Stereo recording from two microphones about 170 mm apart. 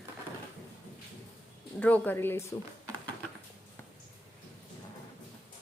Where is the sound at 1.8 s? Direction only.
10° left (ahead or behind).